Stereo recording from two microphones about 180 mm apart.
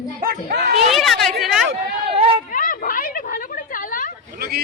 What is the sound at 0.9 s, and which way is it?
Speech, centre (ahead or behind).